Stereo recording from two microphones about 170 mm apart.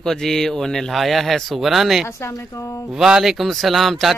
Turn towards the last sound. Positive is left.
turn(degrees=0)  # may be behind; listen again after turning